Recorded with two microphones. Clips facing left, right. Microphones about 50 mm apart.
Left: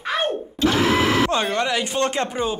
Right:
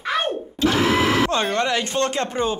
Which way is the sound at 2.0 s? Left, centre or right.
Left.